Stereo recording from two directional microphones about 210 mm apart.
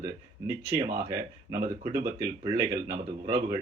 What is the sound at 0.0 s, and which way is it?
Speech, 15° right (ahead or behind).